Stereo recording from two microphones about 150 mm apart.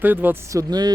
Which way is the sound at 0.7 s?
25° right (ahead or behind).